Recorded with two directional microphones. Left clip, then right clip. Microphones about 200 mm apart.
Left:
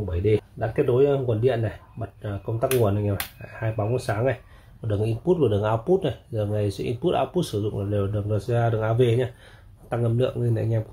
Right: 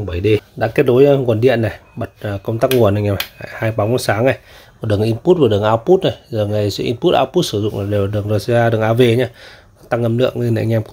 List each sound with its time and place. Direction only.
0.1 s speech: 50° right (ahead or behind)